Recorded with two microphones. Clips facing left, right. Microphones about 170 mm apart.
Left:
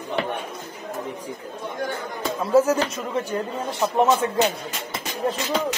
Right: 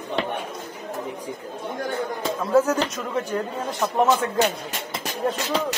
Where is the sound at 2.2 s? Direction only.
5° left (ahead or behind).